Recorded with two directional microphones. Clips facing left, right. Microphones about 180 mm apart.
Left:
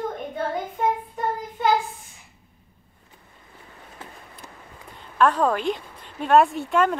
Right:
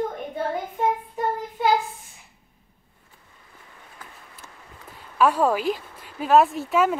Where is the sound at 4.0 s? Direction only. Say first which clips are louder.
Left 4 dB; 25° left (ahead or behind).